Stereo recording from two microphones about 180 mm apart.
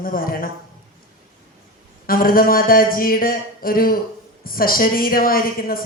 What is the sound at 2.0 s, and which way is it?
Speech, 55° left (ahead or behind).